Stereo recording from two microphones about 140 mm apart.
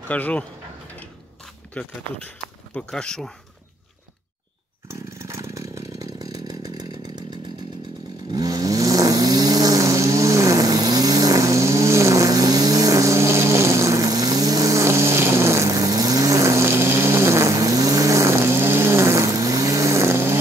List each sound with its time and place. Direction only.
0.1 s speech: 10° left (ahead or behind)
0.9 s mechanisms: 10° left (ahead or behind)
4.8 s chainsaw: 20° right (ahead or behind)
8.3 s vehicle: 25° right (ahead or behind)